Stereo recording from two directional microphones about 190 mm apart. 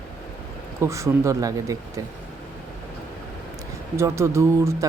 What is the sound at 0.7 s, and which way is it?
Speech, 15° right (ahead or behind).